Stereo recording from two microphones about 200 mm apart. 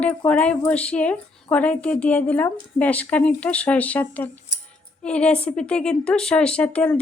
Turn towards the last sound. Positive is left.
turn(degrees=5)  # may be behind; listen again after turning